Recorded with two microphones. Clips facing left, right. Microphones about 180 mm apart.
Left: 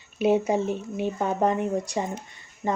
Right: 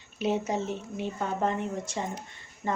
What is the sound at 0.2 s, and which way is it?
Speech, 10° left (ahead or behind).